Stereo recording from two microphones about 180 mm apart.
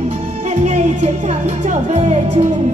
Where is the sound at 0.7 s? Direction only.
40° right (ahead or behind).